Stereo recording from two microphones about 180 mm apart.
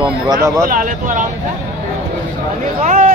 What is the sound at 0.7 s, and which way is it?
Speech, 45° right (ahead or behind).